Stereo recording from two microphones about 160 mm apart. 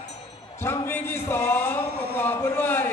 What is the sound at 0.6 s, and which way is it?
Speech, 15° left (ahead or behind).